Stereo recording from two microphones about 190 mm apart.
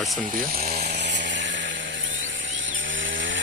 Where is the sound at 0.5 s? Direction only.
50° right (ahead or behind).